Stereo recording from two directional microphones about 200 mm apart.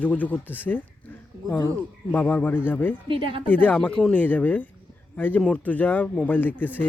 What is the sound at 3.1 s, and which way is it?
Speech, 25° right (ahead or behind).